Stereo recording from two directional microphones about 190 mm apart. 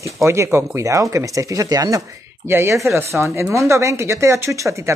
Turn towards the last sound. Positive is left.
turn(degrees=-15)  # may be behind; listen again after turning